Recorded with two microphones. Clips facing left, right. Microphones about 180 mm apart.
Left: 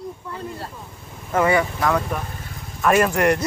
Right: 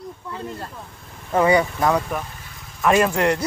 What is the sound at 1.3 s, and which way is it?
A man's voice, 20° right (ahead or behind).